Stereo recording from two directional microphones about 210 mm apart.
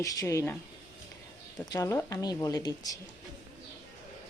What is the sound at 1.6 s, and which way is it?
Speech, 15° left (ahead or behind).